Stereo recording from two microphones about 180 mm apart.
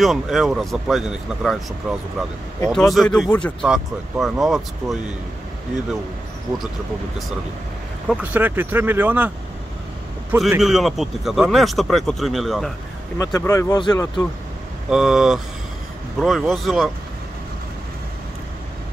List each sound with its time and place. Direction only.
0.0 s speech: centre (ahead or behind)
8.1 s speech: 10° right (ahead or behind)
10.6 s speech: centre (ahead or behind)
13.2 s speech: 15° left (ahead or behind)
14.9 s speech: 5° right (ahead or behind)